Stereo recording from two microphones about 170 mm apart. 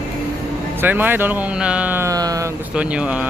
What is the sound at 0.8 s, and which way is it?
Speech, 10° right (ahead or behind).